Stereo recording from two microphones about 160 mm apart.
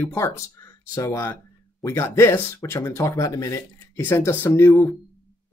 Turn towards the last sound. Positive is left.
turn(degrees=15)  # may be behind; listen again after turning